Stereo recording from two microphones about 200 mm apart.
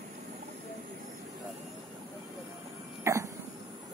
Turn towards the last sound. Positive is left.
turn(degrees=-15)  # may be behind; listen again after turning